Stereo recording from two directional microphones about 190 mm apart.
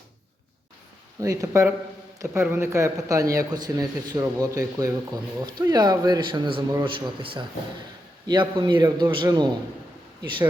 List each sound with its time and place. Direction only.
1.2 s a man's voice: 15° right (ahead or behind)